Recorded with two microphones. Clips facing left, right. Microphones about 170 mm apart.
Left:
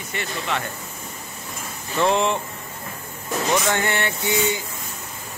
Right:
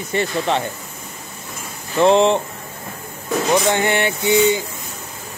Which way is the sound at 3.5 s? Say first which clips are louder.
Right 5 dB; 20° right (ahead or behind).